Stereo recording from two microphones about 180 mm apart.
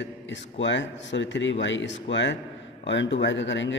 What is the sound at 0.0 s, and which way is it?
A man's voice, 90° left.